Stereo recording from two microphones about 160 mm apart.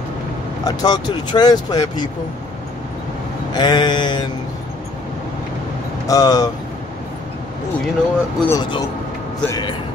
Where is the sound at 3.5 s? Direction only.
25° left (ahead or behind).